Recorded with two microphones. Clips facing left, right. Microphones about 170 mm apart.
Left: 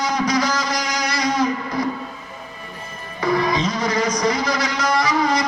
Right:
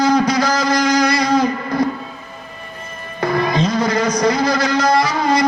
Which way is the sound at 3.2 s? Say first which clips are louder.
Right 2 dB; 60° right (ahead or behind).